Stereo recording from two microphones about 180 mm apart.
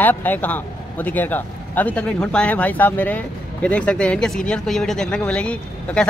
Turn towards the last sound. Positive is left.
turn(degrees=5)  # may be behind; listen again after turning